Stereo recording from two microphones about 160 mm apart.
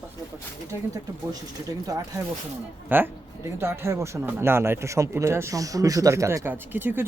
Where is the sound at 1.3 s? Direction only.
20° right (ahead or behind).